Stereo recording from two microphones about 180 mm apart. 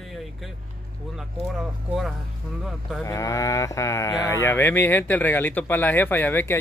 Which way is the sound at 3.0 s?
15° left (ahead or behind).